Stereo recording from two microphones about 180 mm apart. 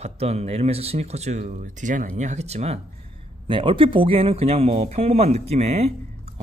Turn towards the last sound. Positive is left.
turn(degrees=-35)  # may be behind; listen again after turning